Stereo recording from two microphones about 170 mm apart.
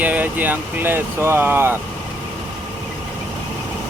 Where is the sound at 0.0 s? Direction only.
10° right (ahead or behind).